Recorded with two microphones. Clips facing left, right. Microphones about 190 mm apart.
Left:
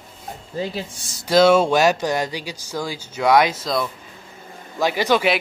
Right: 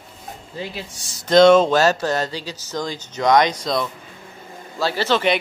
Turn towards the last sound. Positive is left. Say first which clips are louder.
# left 1 dB
turn(degrees=10)  # may be behind; listen again after turning